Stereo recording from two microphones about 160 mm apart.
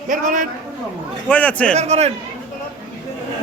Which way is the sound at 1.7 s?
40° right (ahead or behind).